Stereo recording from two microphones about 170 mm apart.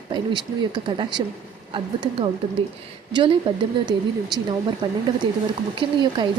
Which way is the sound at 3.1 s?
30° right (ahead or behind).